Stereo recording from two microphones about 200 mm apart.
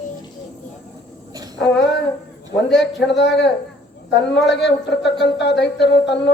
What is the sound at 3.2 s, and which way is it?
A woman's voice, 60° left (ahead or behind).